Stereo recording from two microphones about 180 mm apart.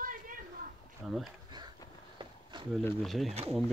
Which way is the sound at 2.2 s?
25° right (ahead or behind).